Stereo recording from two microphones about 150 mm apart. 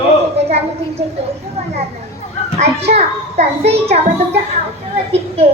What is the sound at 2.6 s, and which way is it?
A child's voice, 45° right (ahead or behind).